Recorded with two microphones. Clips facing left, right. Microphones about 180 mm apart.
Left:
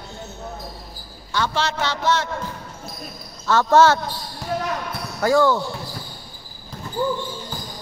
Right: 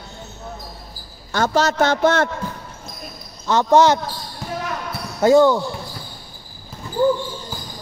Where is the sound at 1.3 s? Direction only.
45° right (ahead or behind).